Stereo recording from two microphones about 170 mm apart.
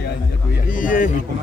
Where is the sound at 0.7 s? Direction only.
50° left (ahead or behind).